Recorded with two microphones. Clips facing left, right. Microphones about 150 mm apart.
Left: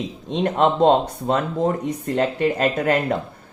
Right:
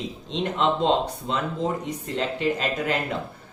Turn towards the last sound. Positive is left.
turn(degrees=50)  # may be behind; listen again after turning